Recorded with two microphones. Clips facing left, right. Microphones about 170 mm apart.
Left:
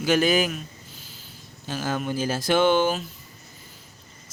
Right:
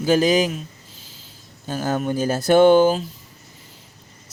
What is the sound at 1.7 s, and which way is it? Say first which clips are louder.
Speech: right 5 dB; 45° right (ahead or behind).